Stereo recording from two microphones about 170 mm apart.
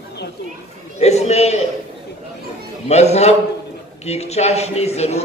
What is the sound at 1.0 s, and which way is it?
Speech, 40° left (ahead or behind).